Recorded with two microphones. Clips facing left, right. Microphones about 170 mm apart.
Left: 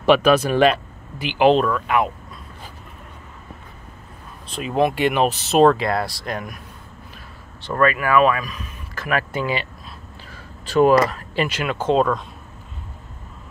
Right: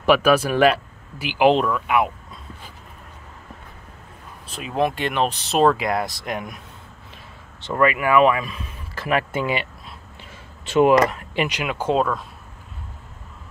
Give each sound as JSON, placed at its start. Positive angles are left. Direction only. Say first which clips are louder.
{"t": 0.0, "sound": "speech", "louder": "left 1 dB", "side_deg": -5}
{"t": 4.5, "sound": "speech", "louder": "left 3 dB", "side_deg": 0}
{"t": 5.8, "sound": "speech", "louder": "left 1 dB", "side_deg": -15}
{"t": 7.6, "sound": "speech", "louder": "even", "side_deg": -15}